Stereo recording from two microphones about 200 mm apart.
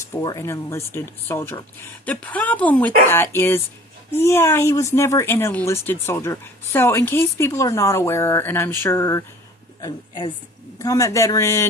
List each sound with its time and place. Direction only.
0.0 s a woman's voice: 15° left (ahead or behind)